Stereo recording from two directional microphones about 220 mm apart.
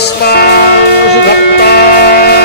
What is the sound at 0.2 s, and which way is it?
Music, 45° left (ahead or behind).